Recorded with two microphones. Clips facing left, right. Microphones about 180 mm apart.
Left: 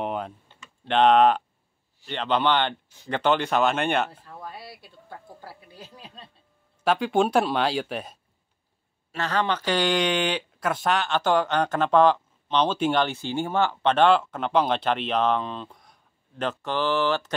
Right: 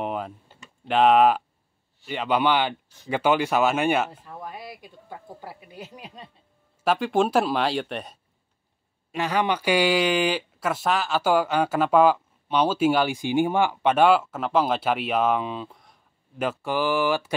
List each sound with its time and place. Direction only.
0.0 s typing: centre (ahead or behind)
0.8 s speech: 5° right (ahead or behind)
4.1 s speech: 15° right (ahead or behind)
6.8 s speech: centre (ahead or behind)
9.1 s speech: 10° right (ahead or behind)